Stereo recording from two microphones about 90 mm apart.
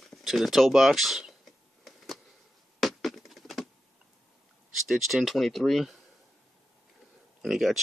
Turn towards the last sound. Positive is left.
turn(degrees=0)  # may be behind; listen again after turning